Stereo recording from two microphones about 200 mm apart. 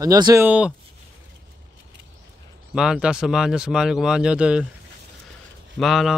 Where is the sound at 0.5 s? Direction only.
5° right (ahead or behind).